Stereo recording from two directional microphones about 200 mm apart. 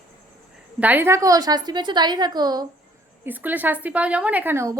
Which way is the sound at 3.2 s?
10° right (ahead or behind).